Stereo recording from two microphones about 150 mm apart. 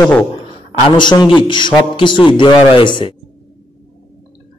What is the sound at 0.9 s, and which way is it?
A man's voice, 30° left (ahead or behind).